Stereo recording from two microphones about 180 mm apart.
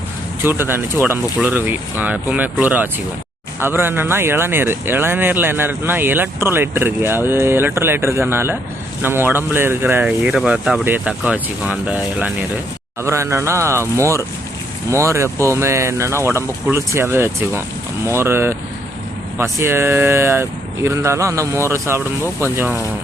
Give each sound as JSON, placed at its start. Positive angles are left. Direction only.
{"t": 0.4, "sound": "speech", "side_deg": -10}